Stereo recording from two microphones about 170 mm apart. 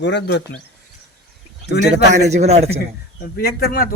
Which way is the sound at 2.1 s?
40° right (ahead or behind).